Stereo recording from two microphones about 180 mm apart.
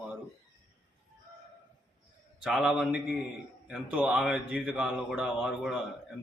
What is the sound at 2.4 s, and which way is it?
Speech, centre (ahead or behind).